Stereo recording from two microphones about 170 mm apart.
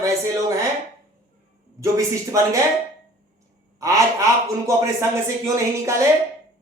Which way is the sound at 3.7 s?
20° right (ahead or behind).